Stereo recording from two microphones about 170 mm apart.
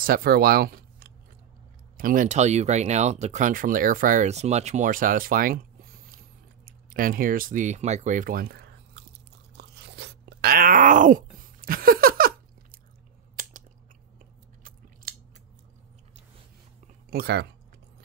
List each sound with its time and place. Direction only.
0.0 s speech: 60° right (ahead or behind)
6.1 s a sound: 55° right (ahead or behind); by 9.0 s 75° right (ahead or behind)
9.6 s crunch: 80° right; by 12.3 s 60° right (ahead or behind)
13.4 s chewing: 50° right (ahead or behind)
17.1 s speech: 70° right (ahead or behind)